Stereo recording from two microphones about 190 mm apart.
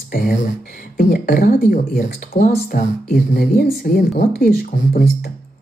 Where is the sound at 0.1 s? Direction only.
45° left (ahead or behind).